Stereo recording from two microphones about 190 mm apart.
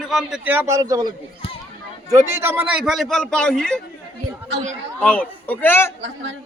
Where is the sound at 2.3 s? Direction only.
10° right (ahead or behind); by 3.8 s 5° left (ahead or behind).